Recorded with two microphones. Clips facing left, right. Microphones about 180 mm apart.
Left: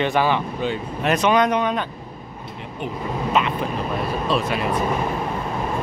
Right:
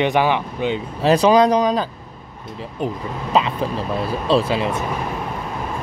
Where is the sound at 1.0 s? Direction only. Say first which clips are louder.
Right 5 dB; 30° right (ahead or behind).